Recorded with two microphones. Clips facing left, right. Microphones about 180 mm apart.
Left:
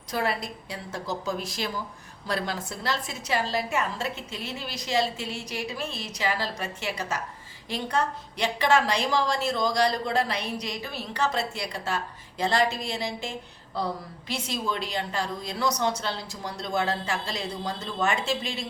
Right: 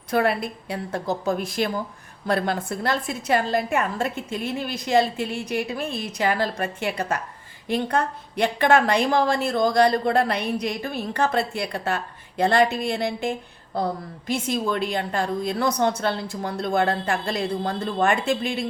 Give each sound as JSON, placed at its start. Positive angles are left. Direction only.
{"t": 0.1, "sound": "a woman's voice", "side_deg": -55}